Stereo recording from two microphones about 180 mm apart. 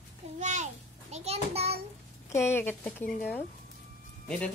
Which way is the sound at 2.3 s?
15° left (ahead or behind).